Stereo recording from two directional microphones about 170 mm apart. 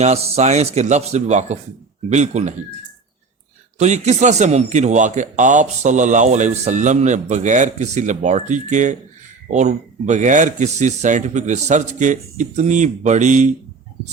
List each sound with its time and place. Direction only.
0.0 s a man's voice: 40° right (ahead or behind)
3.8 s a man's voice: 45° right (ahead or behind)